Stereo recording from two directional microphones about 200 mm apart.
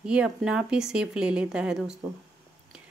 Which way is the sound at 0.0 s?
5° right (ahead or behind).